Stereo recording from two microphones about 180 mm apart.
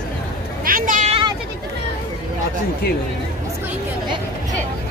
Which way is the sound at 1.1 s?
25° right (ahead or behind).